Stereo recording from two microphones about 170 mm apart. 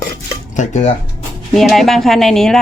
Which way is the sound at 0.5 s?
45° left (ahead or behind).